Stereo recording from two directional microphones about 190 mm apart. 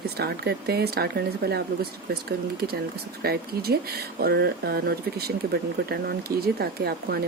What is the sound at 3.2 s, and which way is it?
A woman's voice, 55° right (ahead or behind).